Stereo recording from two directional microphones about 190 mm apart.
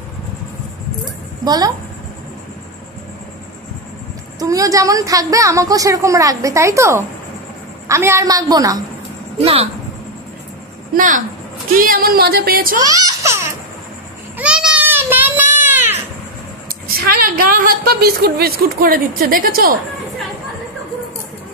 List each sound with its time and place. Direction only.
1.4 s a woman's voice: 20° right (ahead or behind)
4.4 s a woman's voice: 15° right (ahead or behind)
9.4 s speech: 30° right (ahead or behind)
11.0 s a woman's voice: 45° right (ahead or behind)
12.8 s music: 20° right (ahead or behind)
14.4 s a sound: 5° right (ahead or behind)
16.6 s a woman's voice: 50° right (ahead or behind)